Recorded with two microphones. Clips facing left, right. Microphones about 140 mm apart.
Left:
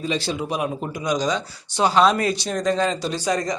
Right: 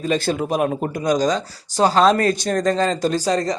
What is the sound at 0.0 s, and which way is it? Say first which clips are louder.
Speech: right 4 dB; 50° right (ahead or behind).